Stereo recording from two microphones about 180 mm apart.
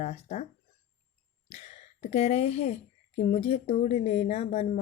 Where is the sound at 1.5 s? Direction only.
35° left (ahead or behind).